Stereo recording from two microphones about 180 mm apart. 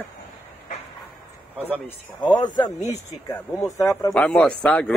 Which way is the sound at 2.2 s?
25° left (ahead or behind).